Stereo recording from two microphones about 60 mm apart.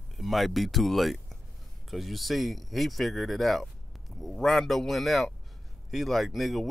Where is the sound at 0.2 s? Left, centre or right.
Centre.